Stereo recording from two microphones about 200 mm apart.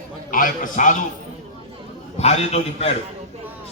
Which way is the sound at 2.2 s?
30° left (ahead or behind).